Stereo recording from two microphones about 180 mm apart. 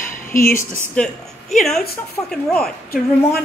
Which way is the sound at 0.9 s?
5° left (ahead or behind).